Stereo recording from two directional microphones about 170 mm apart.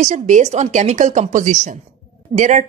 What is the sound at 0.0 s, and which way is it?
Speech, 45° right (ahead or behind).